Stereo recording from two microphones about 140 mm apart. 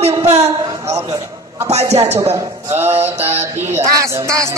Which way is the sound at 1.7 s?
50° right (ahead or behind).